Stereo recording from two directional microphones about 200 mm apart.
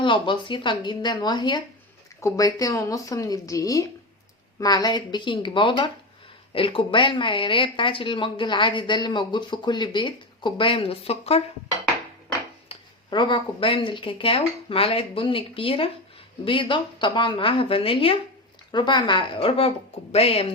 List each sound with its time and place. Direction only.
0.0 s a woman's voice: 25° left (ahead or behind)
12.6 s speech: 25° left (ahead or behind)